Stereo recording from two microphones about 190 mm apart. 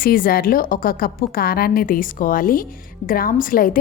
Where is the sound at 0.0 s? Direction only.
50° left (ahead or behind).